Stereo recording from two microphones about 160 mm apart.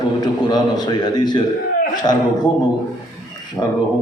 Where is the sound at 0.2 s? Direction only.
25° left (ahead or behind).